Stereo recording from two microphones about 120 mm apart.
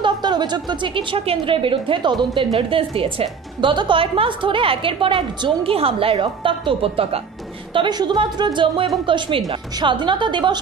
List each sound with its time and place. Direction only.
0.0 s a woman's voice: 35° right (ahead or behind)
7.7 s a woman's voice: 40° right (ahead or behind)